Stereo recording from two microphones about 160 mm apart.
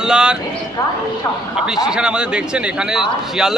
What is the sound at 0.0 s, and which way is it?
Speech, 5° right (ahead or behind).